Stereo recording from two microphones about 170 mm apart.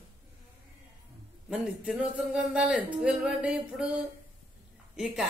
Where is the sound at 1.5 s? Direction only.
5° right (ahead or behind).